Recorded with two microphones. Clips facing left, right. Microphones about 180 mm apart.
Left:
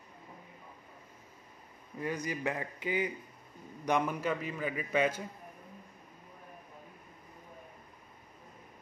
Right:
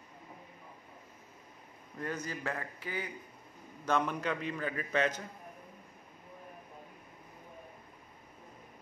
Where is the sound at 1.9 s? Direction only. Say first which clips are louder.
Left 3 dB; 10° left (ahead or behind).